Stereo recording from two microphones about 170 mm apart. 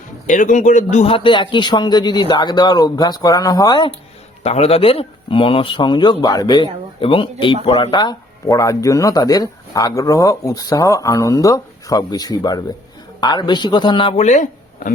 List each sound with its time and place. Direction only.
0.3 s speech: 50° left (ahead or behind); by 3.9 s 25° left (ahead or behind)
4.4 s speech: 35° left (ahead or behind)